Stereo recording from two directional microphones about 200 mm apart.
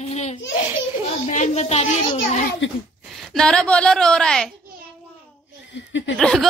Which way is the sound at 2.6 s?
65° left (ahead or behind).